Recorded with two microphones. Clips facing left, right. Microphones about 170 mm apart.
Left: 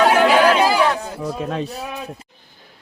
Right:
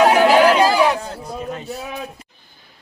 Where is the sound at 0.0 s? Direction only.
5° right (ahead or behind).